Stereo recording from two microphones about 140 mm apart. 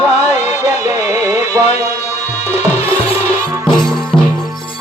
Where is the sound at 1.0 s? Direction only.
15° right (ahead or behind).